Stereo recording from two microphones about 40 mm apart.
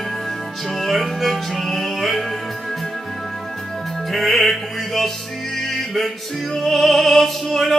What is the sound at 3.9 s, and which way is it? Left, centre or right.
Music, centre.